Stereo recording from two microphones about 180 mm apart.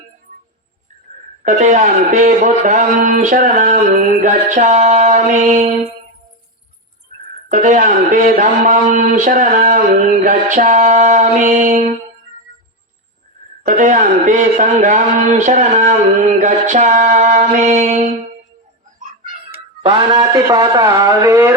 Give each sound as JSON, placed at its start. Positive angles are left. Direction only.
{"t": 1.5, "sound": "speech", "side_deg": -40}
{"t": 7.5, "sound": "speech", "side_deg": -45}
{"t": 13.7, "sound": "a man's voice", "side_deg": -45}
{"t": 19.8, "sound": "a man's voice", "side_deg": -25}